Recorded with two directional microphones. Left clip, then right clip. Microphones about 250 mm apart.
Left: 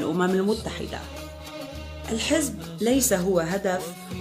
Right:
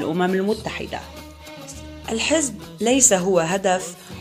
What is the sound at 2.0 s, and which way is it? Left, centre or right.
Speech, centre.